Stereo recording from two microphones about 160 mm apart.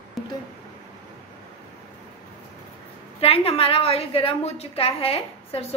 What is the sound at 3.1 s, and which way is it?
A woman's voice, 35° left (ahead or behind).